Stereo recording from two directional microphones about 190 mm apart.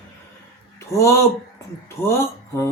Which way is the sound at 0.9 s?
15° left (ahead or behind).